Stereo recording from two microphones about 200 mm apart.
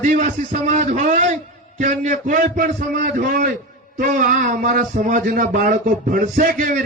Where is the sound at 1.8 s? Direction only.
40° right (ahead or behind).